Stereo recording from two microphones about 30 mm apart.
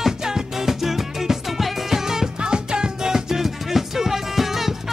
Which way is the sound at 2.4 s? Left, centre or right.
Right.